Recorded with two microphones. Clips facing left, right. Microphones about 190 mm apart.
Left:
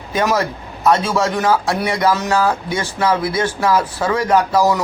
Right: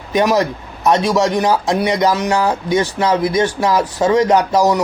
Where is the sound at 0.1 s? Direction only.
20° right (ahead or behind).